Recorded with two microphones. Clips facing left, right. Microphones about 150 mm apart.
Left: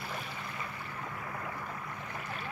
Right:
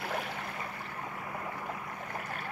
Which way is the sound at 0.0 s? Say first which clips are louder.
Right 5 dB; 65° right (ahead or behind).